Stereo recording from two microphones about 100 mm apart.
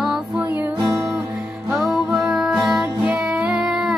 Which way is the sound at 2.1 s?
5° right (ahead or behind).